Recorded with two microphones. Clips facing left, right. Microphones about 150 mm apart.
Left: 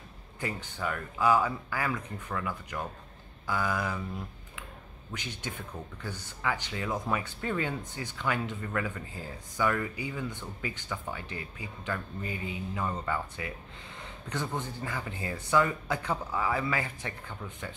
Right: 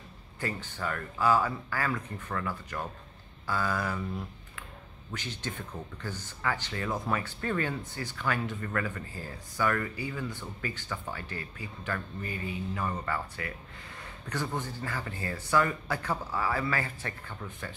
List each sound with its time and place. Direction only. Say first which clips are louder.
0.4 s speech: even; 15° left (ahead or behind)
5.1 s speech: right 1 dB; 15° left (ahead or behind)